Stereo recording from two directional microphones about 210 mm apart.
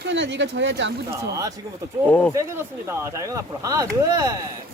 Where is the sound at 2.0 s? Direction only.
5° left (ahead or behind).